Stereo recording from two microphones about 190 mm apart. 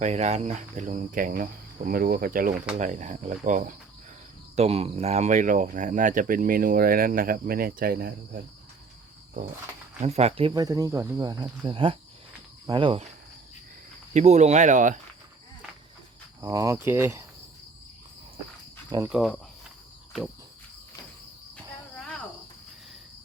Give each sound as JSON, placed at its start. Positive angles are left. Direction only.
{"t": 0.0, "sound": "speech", "side_deg": -35}
{"t": 10.0, "sound": "speech", "side_deg": -35}
{"t": 14.1, "sound": "speech", "side_deg": -35}
{"t": 16.4, "sound": "speech", "side_deg": -15}
{"t": 19.0, "sound": "speech", "side_deg": -5}